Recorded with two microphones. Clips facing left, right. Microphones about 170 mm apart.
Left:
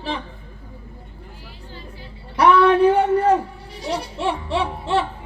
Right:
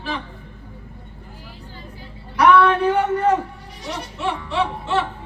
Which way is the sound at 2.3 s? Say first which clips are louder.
Left 1 dB; 30° left (ahead or behind).